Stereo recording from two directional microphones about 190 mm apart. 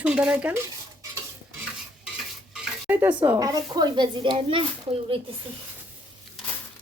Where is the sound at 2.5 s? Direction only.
5° right (ahead or behind); by 5.2 s 25° right (ahead or behind).